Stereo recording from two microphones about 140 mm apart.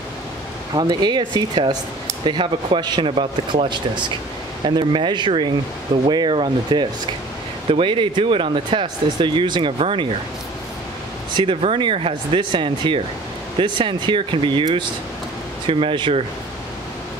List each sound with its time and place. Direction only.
0.7 s speech: 30° right (ahead or behind)
11.3 s speech: 40° right (ahead or behind)